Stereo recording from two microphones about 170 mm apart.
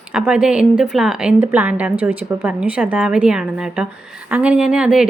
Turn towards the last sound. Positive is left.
turn(degrees=-5)  # may be behind; listen again after turning